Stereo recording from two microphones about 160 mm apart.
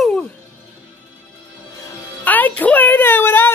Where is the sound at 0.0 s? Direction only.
5° left (ahead or behind).